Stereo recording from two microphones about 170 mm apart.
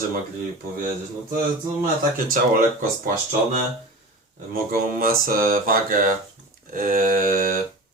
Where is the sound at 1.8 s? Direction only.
55° right (ahead or behind).